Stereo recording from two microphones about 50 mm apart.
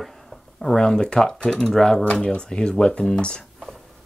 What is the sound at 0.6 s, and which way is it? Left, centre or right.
Speech, centre.